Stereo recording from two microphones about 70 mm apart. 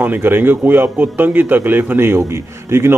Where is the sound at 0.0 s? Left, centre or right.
Right.